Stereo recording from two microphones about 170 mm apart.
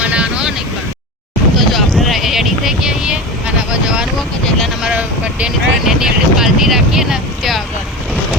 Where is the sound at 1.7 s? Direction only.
Centre (ahead or behind).